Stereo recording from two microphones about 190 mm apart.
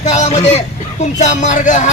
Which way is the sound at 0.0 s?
35° left (ahead or behind).